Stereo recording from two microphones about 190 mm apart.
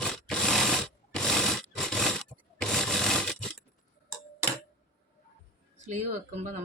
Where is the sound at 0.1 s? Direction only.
Centre (ahead or behind).